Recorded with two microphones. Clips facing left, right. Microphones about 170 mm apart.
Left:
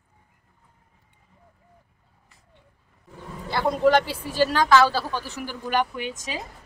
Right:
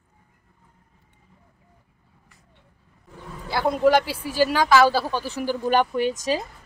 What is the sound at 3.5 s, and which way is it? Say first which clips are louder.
Speech: right 1 dB; 5° right (ahead or behind).